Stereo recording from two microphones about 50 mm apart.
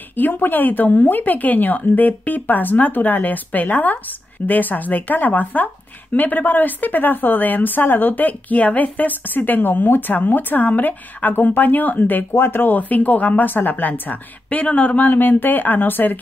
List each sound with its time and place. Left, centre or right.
0.2 s a woman's voice: left